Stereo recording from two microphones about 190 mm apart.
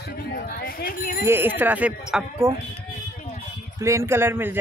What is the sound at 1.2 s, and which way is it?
A man's voice, 10° right (ahead or behind).